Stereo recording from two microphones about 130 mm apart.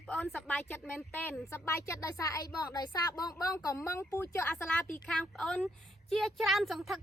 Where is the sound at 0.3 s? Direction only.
10° left (ahead or behind).